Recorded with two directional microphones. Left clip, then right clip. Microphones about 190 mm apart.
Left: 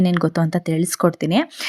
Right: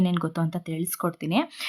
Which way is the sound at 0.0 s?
25° left (ahead or behind).